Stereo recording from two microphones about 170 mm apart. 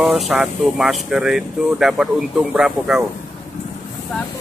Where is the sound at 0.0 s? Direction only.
Centre (ahead or behind).